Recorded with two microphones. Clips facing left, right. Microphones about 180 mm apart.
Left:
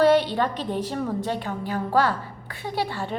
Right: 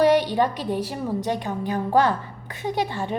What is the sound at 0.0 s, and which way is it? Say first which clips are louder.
A woman's voice: right 1 dB; 15° right (ahead or behind).